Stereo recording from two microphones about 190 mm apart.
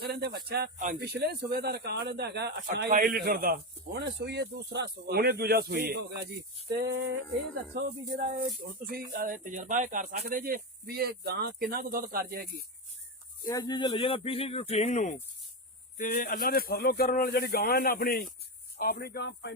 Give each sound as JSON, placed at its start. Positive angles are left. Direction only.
{"t": 0.0, "sound": "speech", "side_deg": -60}
{"t": 0.8, "sound": "speech", "side_deg": -45}
{"t": 1.0, "sound": "speech", "side_deg": -60}
{"t": 6.7, "sound": "a sound", "side_deg": -70}
{"t": 7.7, "sound": "speech", "side_deg": -65}
{"t": 8.8, "sound": "speech", "side_deg": -50}
{"t": 13.5, "sound": "speech", "side_deg": 20}